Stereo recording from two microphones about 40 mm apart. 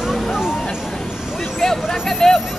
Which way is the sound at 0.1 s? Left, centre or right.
Centre.